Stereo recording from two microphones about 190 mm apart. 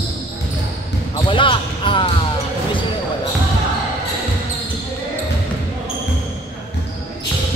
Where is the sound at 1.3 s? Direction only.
25° left (ahead or behind).